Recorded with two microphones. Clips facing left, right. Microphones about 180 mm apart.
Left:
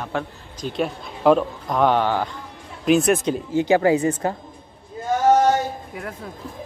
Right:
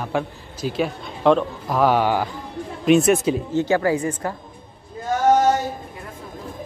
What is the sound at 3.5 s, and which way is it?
Speech, 15° left (ahead or behind).